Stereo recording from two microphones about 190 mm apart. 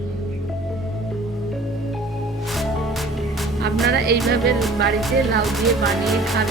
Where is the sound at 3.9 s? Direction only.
60° right (ahead or behind).